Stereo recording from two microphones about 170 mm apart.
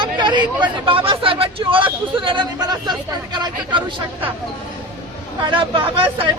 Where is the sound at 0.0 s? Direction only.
25° right (ahead or behind).